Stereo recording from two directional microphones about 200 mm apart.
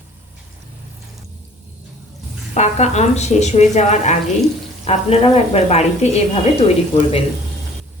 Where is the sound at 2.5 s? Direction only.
35° left (ahead or behind).